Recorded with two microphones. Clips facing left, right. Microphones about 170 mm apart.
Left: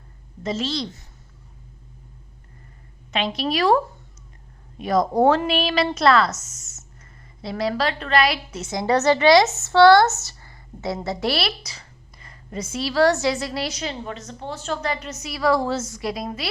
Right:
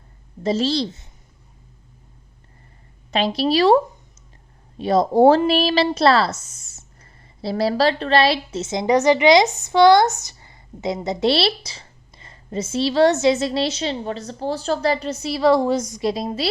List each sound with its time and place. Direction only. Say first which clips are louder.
0.4 s a woman's voice: right 6 dB; 35° right (ahead or behind)
3.1 s a woman's voice: right 5 dB; 35° right (ahead or behind)
4.8 s a woman's voice: right 4 dB; 30° right (ahead or behind)